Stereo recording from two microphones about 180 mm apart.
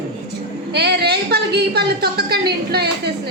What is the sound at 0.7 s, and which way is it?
A woman's voice, 65° right (ahead or behind).